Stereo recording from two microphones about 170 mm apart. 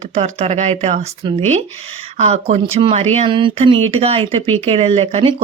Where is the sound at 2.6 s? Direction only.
30° right (ahead or behind).